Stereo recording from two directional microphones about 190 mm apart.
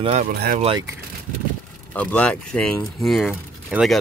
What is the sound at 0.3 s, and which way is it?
Speech, 55° right (ahead or behind).